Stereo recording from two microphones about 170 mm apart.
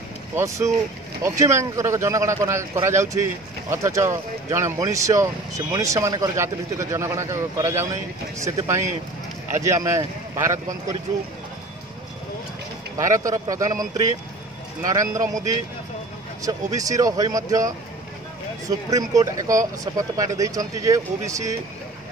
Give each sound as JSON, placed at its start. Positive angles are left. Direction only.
{"t": 0.3, "sound": "speech", "side_deg": -15}
{"t": 12.9, "sound": "speech", "side_deg": -20}
{"t": 14.9, "sound": "speech", "side_deg": -20}
{"t": 16.4, "sound": "speech", "side_deg": -20}